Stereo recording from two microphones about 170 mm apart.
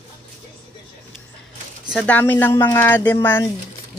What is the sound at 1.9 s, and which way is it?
Speech, 5° left (ahead or behind).